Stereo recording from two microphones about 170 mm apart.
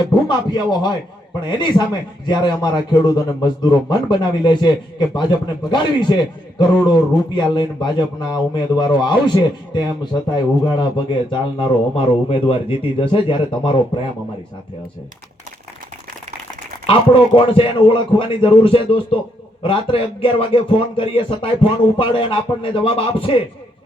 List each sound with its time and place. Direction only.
0.1 s a man's voice: 25° left (ahead or behind)
16.8 s a man's voice: 30° left (ahead or behind)